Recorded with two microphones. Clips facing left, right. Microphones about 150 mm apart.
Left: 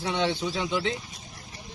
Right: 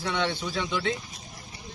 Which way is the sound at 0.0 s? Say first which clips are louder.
Left 2 dB; 25° left (ahead or behind).